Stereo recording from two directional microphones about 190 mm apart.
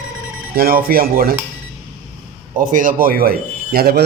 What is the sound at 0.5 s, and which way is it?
Speech, 50° right (ahead or behind).